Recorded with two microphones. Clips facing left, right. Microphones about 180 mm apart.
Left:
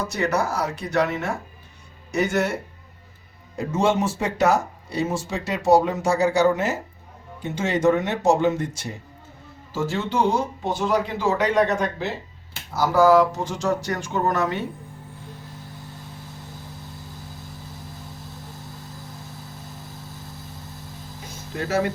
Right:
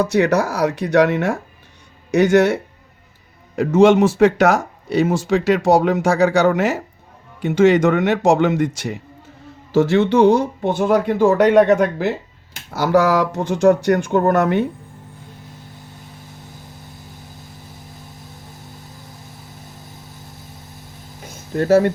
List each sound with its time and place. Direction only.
0.0 s speech: 70° right (ahead or behind)
3.5 s speech: 90° right
9.7 s speech: 75° right (ahead or behind); by 14.6 s 60° right (ahead or behind)
21.5 s speech: 50° right (ahead or behind)